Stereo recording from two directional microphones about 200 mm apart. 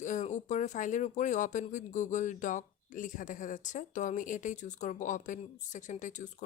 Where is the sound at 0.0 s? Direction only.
35° left (ahead or behind).